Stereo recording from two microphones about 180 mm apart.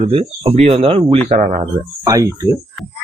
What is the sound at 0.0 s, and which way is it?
Speech, 30° right (ahead or behind).